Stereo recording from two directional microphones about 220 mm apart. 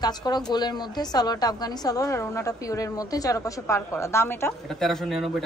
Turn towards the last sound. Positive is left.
turn(degrees=0)  # may be behind; listen again after turning